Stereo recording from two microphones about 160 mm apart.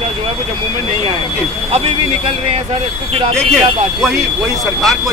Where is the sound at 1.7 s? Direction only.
40° right (ahead or behind).